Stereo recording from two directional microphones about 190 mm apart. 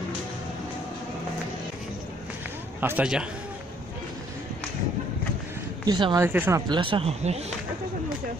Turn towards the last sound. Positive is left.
turn(degrees=-30)  # may be behind; listen again after turning